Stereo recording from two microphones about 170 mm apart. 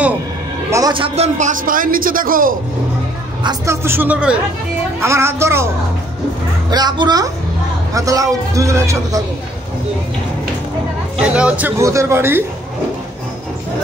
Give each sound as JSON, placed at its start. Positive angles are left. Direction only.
{"t": 0.7, "sound": "a man's voice", "side_deg": -20}
{"t": 0.9, "sound": "a man's voice", "side_deg": -35}
{"t": 3.4, "sound": "speech", "side_deg": -15}
{"t": 6.7, "sound": "a man's voice", "side_deg": -25}
{"t": 11.1, "sound": "speech", "side_deg": -5}